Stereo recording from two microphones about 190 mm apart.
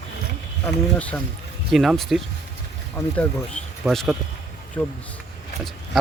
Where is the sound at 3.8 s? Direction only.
Centre (ahead or behind).